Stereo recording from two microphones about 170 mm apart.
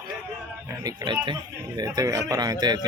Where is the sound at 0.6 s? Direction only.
25° right (ahead or behind).